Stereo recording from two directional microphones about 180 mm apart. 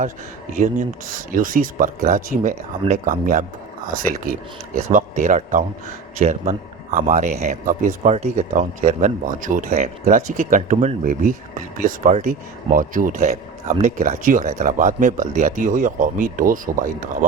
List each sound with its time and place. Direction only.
0.5 s a man's voice: 45° right (ahead or behind)